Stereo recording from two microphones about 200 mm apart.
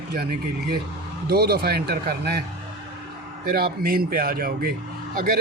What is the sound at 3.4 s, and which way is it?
A man's voice, 50° right (ahead or behind).